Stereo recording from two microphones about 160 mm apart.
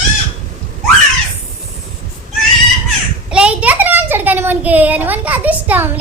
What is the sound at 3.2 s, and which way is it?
A child's voice, 5° right (ahead or behind).